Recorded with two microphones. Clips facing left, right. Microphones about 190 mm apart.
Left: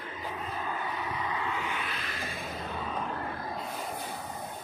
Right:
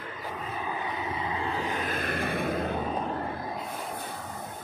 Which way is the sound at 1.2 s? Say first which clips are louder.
Right 4 dB; 30° right (ahead or behind).